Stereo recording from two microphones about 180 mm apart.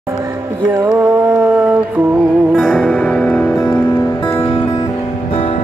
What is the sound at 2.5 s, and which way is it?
Music, 5° left (ahead or behind).